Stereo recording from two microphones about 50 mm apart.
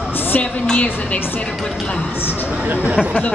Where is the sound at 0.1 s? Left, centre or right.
Left.